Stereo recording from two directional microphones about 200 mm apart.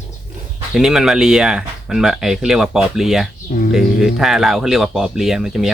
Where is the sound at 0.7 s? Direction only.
Centre (ahead or behind).